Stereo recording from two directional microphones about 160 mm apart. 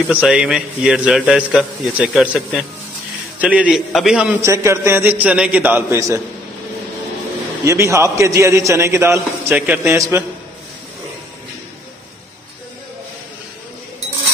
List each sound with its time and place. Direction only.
0.0 s a man's voice: 10° right (ahead or behind)
4.4 s a man's voice: 15° right (ahead or behind)
7.6 s a man's voice: 20° right (ahead or behind)